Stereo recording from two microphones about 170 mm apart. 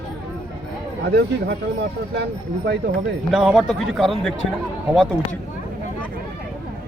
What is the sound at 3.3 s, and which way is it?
Speech, 5° right (ahead or behind).